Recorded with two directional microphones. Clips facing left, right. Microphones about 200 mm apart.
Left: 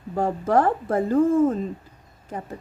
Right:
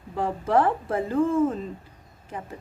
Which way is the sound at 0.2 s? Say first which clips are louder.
Left 2 dB; 45° left (ahead or behind).